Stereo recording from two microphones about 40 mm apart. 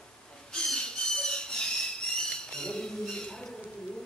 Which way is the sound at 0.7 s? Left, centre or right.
Centre.